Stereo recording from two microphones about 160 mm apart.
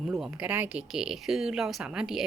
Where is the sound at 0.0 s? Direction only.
Centre (ahead or behind).